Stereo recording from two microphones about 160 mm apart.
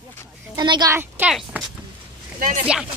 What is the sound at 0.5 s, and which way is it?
Speech, 25° right (ahead or behind).